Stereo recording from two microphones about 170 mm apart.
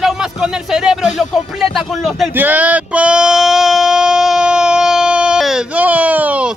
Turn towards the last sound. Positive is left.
turn(degrees=-10)  # may be behind; listen again after turning